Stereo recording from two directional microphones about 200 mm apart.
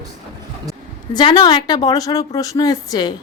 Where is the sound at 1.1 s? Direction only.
20° left (ahead or behind).